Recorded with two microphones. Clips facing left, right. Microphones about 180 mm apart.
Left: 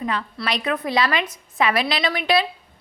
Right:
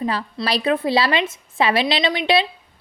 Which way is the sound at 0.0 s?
35° right (ahead or behind).